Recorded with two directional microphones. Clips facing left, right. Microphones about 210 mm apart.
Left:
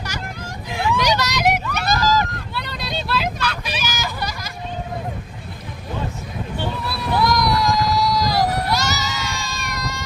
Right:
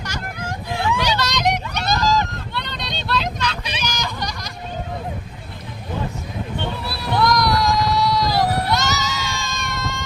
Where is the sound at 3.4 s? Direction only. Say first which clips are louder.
Even; 20° right (ahead or behind).